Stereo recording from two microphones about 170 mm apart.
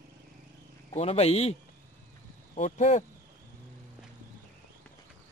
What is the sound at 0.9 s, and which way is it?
Speech, 35° left (ahead or behind).